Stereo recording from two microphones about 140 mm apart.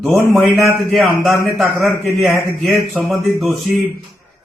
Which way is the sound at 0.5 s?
20° right (ahead or behind).